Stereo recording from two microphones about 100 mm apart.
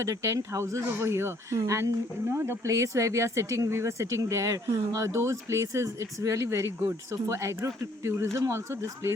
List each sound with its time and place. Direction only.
0.0 s speech: 30° right (ahead or behind)